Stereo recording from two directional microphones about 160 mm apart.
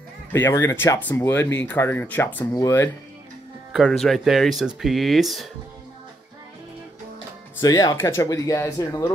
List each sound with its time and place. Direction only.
0.3 s speech: 15° left (ahead or behind)
3.7 s speech: centre (ahead or behind)
7.6 s speech: 25° left (ahead or behind)